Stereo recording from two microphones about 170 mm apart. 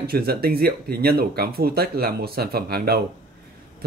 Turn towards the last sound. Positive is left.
turn(degrees=-65)  # may be behind; listen again after turning